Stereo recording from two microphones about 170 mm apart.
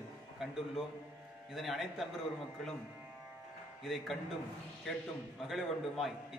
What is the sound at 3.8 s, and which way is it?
Speech, centre (ahead or behind).